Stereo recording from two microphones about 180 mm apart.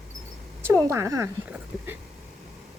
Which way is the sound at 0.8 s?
15° right (ahead or behind).